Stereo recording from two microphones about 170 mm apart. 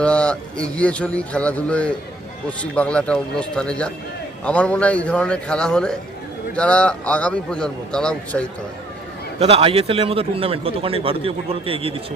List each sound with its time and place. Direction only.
0.0 s a man's voice: 5° left (ahead or behind)
9.4 s a man's voice: 35° right (ahead or behind)